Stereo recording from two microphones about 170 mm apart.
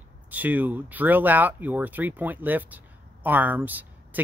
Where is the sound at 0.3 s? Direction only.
10° right (ahead or behind).